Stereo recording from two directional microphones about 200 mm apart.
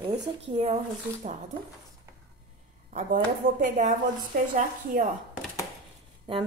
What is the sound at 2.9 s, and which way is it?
A woman's voice, 35° right (ahead or behind).